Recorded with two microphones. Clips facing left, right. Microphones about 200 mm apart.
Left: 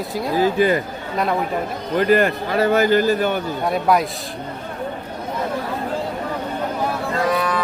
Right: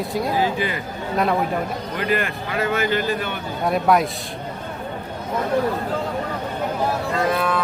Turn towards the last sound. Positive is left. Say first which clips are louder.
# left 1 dB
turn(degrees=0)  # may be behind; listen again after turning